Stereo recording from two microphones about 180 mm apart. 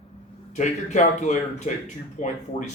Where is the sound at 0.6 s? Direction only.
40° left (ahead or behind).